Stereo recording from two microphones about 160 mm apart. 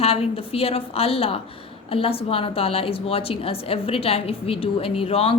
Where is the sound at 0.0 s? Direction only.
35° left (ahead or behind).